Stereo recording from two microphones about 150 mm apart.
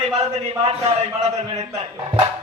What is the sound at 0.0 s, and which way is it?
Speech, 45° right (ahead or behind).